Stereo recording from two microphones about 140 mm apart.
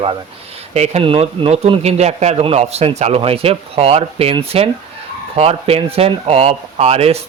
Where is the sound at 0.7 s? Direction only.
50° right (ahead or behind).